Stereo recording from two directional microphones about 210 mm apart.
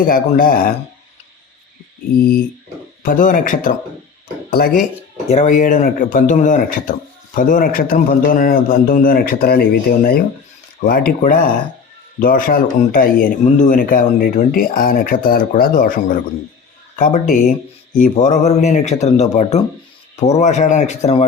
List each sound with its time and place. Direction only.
0.0 s speech: 45° left (ahead or behind)
3.0 s speech: 40° left (ahead or behind)
10.8 s rub: 45° left (ahead or behind)
11.2 s speech: 40° left (ahead or behind)